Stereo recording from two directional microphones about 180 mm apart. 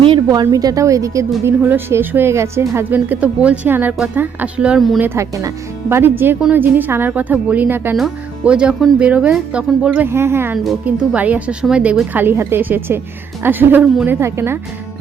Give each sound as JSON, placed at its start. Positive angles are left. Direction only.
{"t": 0.0, "sound": "a woman's voice", "side_deg": -25}
{"t": 4.9, "sound": "speech", "side_deg": -15}
{"t": 10.6, "sound": "speech", "side_deg": 0}